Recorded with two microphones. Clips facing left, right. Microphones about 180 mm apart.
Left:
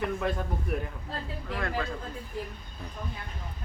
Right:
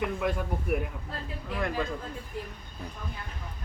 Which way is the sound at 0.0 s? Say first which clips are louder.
Even; 15° right (ahead or behind).